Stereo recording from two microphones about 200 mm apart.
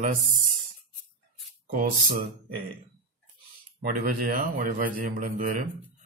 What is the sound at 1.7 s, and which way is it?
Speech, 45° right (ahead or behind).